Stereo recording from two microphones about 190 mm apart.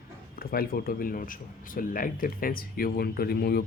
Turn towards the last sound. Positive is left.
turn(degrees=55)  # may be behind; listen again after turning